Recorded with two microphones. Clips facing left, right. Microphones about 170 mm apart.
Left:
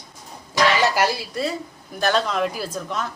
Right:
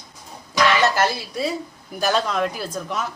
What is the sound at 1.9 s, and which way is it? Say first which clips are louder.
A woman's voice: even; 5° right (ahead or behind).